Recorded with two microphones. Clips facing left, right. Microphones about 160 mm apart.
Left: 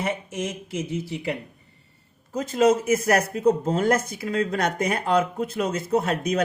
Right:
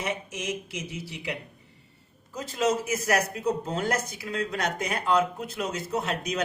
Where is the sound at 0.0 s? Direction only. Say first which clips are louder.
Left 4 dB; 55° left (ahead or behind).